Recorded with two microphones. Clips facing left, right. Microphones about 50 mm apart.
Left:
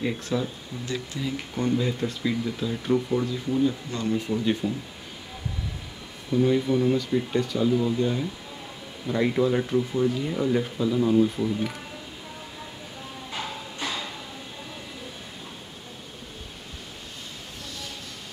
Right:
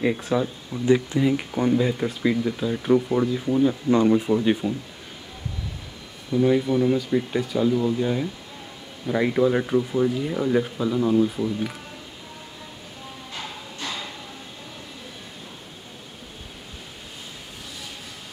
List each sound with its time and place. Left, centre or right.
0.0 s speech: centre
6.4 s speech: centre
13.8 s a sound: centre